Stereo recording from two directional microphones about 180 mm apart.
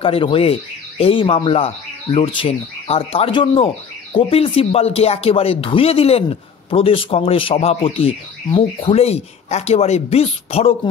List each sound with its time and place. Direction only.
0.0 s speech: 30° left (ahead or behind)